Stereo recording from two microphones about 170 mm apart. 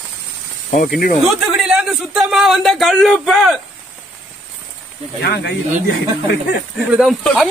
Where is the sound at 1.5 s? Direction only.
5° right (ahead or behind).